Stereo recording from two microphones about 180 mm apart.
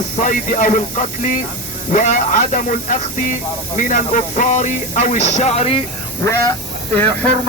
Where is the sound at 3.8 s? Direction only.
45° left (ahead or behind).